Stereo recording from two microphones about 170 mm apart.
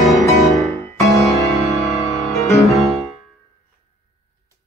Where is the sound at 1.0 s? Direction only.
20° left (ahead or behind).